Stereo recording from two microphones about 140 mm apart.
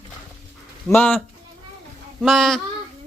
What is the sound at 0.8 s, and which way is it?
Speech, 10° left (ahead or behind).